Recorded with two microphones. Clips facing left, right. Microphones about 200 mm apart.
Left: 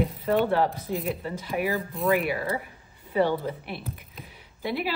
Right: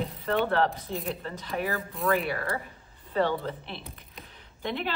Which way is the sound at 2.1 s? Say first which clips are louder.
Left 3 dB; 15° left (ahead or behind).